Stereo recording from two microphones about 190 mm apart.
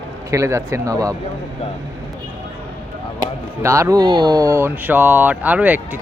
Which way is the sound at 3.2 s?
15° right (ahead or behind).